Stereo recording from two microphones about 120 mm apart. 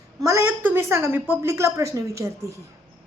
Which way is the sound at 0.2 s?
25° right (ahead or behind).